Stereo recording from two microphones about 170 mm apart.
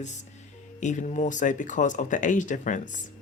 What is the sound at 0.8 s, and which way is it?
Speech, 45° left (ahead or behind).